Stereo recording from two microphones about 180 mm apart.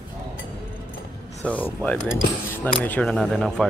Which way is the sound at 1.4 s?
5° left (ahead or behind).